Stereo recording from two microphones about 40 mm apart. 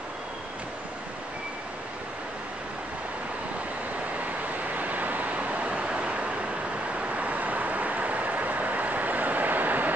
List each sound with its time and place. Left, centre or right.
4.7 s vehicle: right